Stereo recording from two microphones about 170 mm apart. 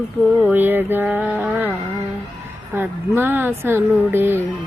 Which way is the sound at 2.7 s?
15° right (ahead or behind).